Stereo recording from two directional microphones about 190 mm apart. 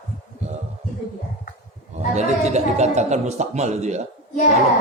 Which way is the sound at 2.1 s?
35° right (ahead or behind).